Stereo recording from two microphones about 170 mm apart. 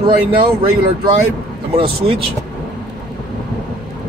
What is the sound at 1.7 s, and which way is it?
Speech, 35° right (ahead or behind).